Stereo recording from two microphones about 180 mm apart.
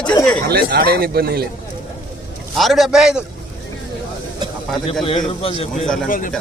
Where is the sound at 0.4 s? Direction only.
55° right (ahead or behind).